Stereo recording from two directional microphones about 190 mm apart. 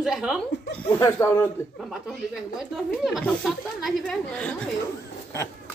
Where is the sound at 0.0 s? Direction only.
5° right (ahead or behind).